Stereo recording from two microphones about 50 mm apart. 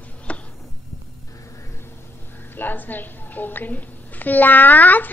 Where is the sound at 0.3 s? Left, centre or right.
Left.